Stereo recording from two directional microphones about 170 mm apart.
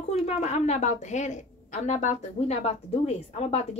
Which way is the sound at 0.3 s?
40° left (ahead or behind).